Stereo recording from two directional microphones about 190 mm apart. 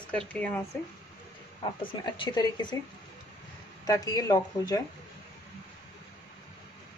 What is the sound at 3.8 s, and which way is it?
Speech, 20° left (ahead or behind).